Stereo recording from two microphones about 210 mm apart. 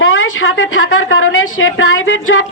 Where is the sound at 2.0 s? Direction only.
65° left (ahead or behind).